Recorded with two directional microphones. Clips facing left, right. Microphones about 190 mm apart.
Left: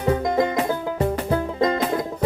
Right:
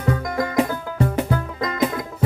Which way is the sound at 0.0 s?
25° left (ahead or behind).